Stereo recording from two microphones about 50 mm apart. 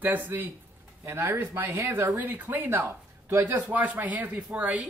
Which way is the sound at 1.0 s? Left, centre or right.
Right.